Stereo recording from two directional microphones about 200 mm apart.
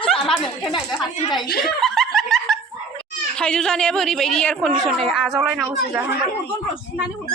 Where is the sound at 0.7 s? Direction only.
20° left (ahead or behind).